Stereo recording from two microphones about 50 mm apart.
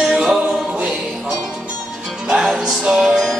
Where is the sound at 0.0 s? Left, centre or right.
Centre.